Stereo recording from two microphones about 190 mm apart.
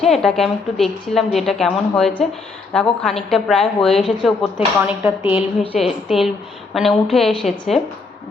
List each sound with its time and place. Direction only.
0.0 s a woman's voice: centre (ahead or behind)
4.5 s speech: 10° right (ahead or behind)
5.3 s a woman's voice: 30° left (ahead or behind)
5.8 s a woman's voice: centre (ahead or behind)